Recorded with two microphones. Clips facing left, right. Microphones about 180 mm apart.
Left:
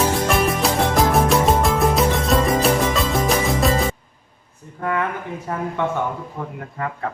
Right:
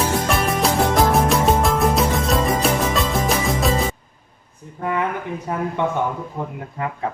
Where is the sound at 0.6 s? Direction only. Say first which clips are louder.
Right 1 dB; centre (ahead or behind).